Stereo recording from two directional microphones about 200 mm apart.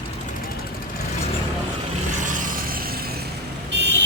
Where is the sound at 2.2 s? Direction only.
40° right (ahead or behind).